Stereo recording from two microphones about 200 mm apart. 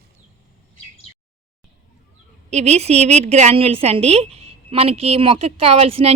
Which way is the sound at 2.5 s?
35° right (ahead or behind).